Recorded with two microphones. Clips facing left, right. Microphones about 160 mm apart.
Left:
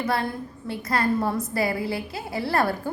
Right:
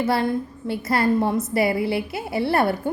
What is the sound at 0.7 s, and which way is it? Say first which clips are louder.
A woman's voice: right 4 dB; 25° right (ahead or behind).